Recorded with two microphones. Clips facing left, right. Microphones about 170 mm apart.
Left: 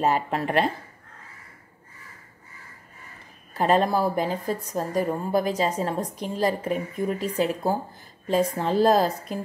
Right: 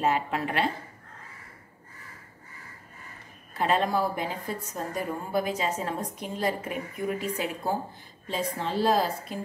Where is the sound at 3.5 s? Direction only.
40° left (ahead or behind).